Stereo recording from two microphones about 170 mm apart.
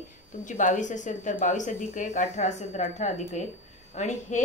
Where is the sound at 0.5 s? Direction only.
45° left (ahead or behind).